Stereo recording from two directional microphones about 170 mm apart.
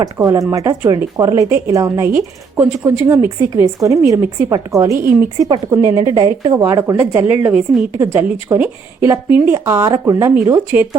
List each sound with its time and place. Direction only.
0.0 s a woman's voice: 20° right (ahead or behind)